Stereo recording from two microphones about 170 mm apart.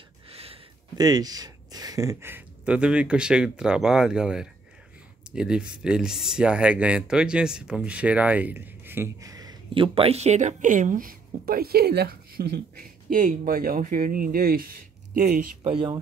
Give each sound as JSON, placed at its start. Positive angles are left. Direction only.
{"t": 0.3, "sound": "a sound", "side_deg": -35}
{"t": 0.9, "sound": "speech", "side_deg": -25}
{"t": 15.2, "sound": "speech", "side_deg": -50}